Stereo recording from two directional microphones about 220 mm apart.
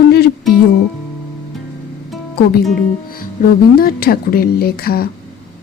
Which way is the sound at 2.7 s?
40° left (ahead or behind).